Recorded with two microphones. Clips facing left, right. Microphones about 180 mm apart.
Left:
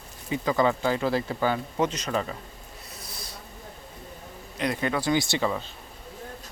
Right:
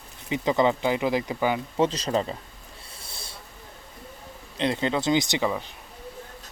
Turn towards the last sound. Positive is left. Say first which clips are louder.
# right 1 dB
turn(degrees=-15)  # may be behind; listen again after turning